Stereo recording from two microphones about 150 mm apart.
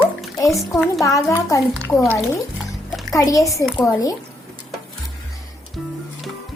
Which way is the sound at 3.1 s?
20° left (ahead or behind).